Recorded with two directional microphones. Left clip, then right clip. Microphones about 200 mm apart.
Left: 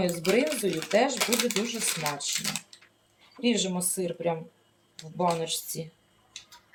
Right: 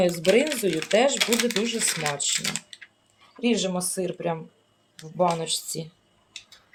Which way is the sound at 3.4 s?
45° right (ahead or behind).